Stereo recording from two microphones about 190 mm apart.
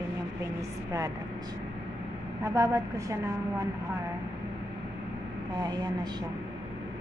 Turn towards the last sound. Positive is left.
turn(degrees=-20)  # may be behind; listen again after turning